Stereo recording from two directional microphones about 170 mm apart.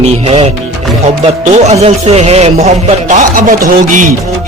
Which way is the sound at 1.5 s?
40° right (ahead or behind).